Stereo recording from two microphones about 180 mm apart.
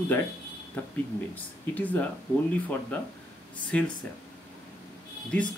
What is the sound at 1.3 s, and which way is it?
Speech, 10° left (ahead or behind).